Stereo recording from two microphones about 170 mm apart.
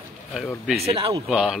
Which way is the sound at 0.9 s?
30° right (ahead or behind).